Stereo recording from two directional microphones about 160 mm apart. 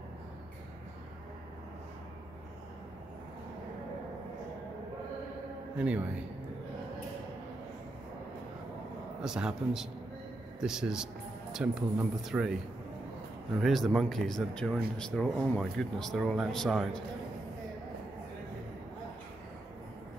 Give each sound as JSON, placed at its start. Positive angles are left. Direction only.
{"t": 5.8, "sound": "a man's voice", "side_deg": -10}
{"t": 9.2, "sound": "speech", "side_deg": -5}
{"t": 13.6, "sound": "speech", "side_deg": 0}